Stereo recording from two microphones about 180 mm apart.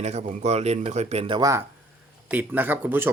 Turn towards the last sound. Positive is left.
turn(degrees=-10)  # may be behind; listen again after turning